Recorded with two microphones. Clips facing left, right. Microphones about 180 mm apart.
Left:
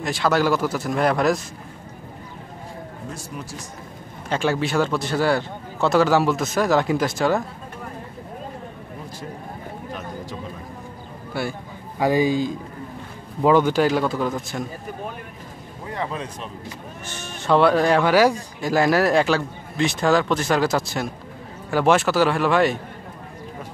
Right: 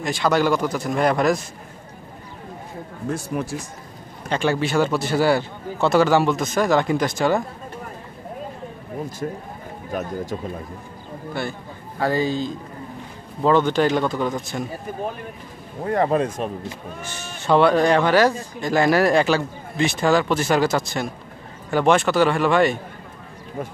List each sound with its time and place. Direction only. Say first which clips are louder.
0.0 s speech: right 1 dB; centre (ahead or behind)
3.1 s a man's voice: right 12 dB; 55° right (ahead or behind)
4.3 s speech: right 1 dB; centre (ahead or behind)
11.4 s a man's voice: left 2 dB; 10° left (ahead or behind)
15.8 s speech: right 10 dB; 50° right (ahead or behind)
17.4 s speech: right 1 dB; centre (ahead or behind)